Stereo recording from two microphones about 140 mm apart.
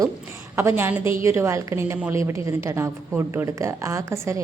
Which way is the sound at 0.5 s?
15° right (ahead or behind).